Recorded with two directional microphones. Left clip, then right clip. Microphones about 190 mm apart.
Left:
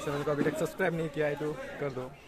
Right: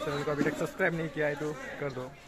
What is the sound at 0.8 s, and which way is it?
Speech, 5° left (ahead or behind).